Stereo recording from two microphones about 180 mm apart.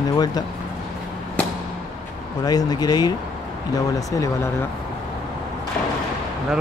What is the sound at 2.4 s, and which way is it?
Speech, 20° left (ahead or behind).